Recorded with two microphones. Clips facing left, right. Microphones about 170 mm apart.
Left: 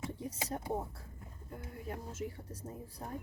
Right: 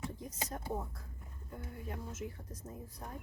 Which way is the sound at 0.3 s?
30° left (ahead or behind).